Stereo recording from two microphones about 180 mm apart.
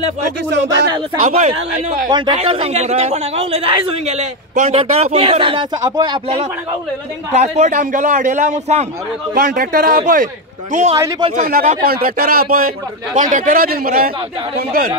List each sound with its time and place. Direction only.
1.2 s speech: 40° right (ahead or behind)
2.0 s a man's voice: 25° right (ahead or behind); by 8.8 s 40° right (ahead or behind)
9.3 s speech: 55° right (ahead or behind)
11.0 s speech: 20° right (ahead or behind)
11.4 s speech: 50° right (ahead or behind)